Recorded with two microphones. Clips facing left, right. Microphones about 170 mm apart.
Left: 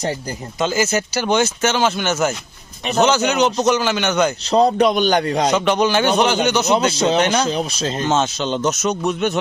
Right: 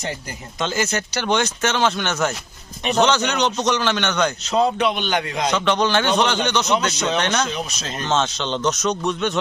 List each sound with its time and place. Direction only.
0.6 s a man's voice: 5° left (ahead or behind)
4.4 s a man's voice: 40° left (ahead or behind)
5.5 s a man's voice: 10° left (ahead or behind)
6.7 s a man's voice: 30° left (ahead or behind)
7.2 s a man's voice: 10° left (ahead or behind)
7.4 s a man's voice: 30° left (ahead or behind)
8.0 s a man's voice: 10° left (ahead or behind)